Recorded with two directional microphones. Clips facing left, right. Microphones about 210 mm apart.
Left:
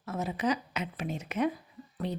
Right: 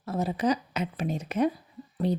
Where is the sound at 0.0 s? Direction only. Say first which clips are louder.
Right 4 dB; 35° right (ahead or behind).